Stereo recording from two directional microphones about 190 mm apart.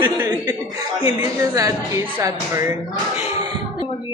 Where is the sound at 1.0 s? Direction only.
20° right (ahead or behind).